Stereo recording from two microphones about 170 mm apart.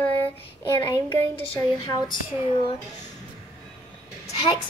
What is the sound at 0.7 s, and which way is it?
A woman's voice, 15° left (ahead or behind).